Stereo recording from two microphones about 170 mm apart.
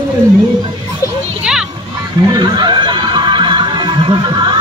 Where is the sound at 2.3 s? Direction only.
25° right (ahead or behind).